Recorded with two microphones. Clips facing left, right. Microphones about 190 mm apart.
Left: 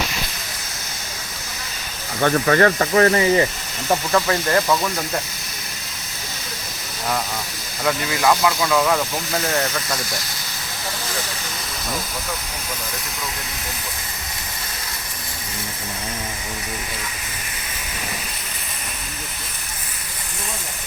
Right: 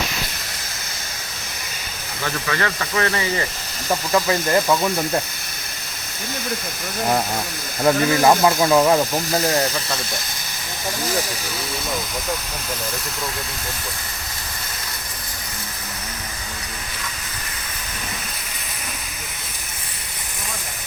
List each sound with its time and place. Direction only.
2.2 s speech: 45° left (ahead or behind)
4.1 s speech: 15° right (ahead or behind)
7.9 s speech: 40° right (ahead or behind)
8.7 s speech: 25° right (ahead or behind)